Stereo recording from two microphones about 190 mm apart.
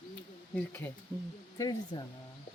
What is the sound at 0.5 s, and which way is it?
Speech, 10° left (ahead or behind).